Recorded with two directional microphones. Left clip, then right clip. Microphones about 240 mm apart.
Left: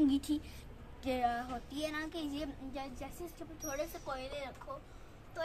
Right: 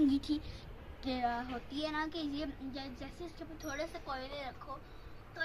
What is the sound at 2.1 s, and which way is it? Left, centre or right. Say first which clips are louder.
Speech: right 1 dB; left.